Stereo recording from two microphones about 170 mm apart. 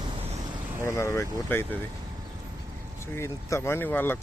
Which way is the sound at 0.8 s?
15° left (ahead or behind).